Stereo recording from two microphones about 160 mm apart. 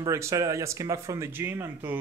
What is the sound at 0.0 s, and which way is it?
Speech, 20° right (ahead or behind).